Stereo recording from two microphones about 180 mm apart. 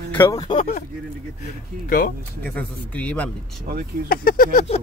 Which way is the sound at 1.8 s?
50° left (ahead or behind).